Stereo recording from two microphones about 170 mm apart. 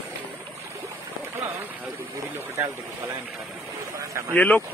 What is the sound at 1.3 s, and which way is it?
Speech, 15° right (ahead or behind).